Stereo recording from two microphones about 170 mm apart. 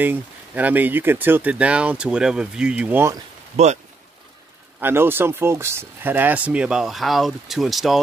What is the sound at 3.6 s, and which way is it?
Speech, 40° right (ahead or behind).